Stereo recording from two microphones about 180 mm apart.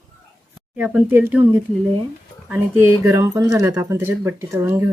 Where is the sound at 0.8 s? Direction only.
10° right (ahead or behind).